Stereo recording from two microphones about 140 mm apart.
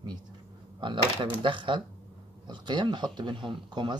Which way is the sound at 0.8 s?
35° right (ahead or behind).